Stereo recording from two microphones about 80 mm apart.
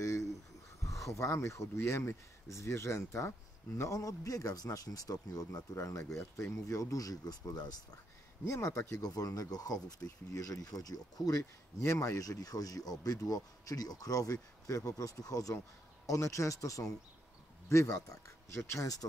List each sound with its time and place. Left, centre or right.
0.8 s speech: left
8.5 s speech: left
11.8 s speech: left